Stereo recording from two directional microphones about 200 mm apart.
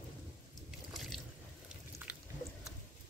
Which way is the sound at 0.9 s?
Centre (ahead or behind).